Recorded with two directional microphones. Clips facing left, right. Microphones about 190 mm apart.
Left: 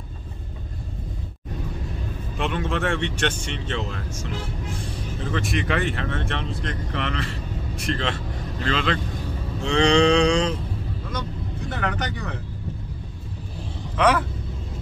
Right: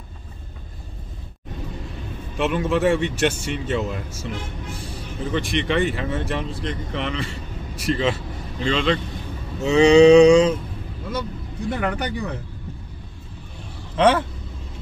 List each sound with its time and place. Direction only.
2.3 s speech: 5° right (ahead or behind)
5.3 s speech: centre (ahead or behind)
11.7 s speech: 10° right (ahead or behind)
13.9 s speech: 30° right (ahead or behind)